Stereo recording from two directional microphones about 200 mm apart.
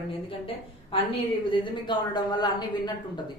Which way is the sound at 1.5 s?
25° left (ahead or behind).